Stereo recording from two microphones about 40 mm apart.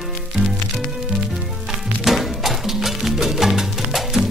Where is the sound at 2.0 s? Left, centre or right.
Centre.